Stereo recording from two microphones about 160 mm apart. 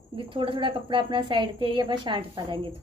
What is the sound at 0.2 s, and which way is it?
A woman's voice, 30° right (ahead or behind).